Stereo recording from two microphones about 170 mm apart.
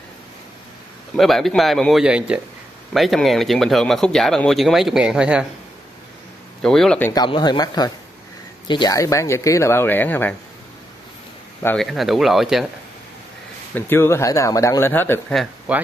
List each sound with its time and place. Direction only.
1.1 s speech: centre (ahead or behind)
6.6 s speech: 5° left (ahead or behind)
7.2 s speech: 25° left (ahead or behind); by 10.3 s 10° left (ahead or behind)
11.6 s speech: 5° left (ahead or behind)
13.7 s speech: 15° left (ahead or behind)
15.3 s speech: 5° right (ahead or behind)